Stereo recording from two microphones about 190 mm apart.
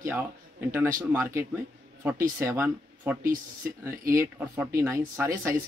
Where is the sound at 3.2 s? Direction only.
45° right (ahead or behind).